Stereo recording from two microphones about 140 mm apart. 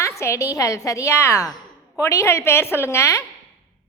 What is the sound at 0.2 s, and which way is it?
A woman's voice, 20° left (ahead or behind).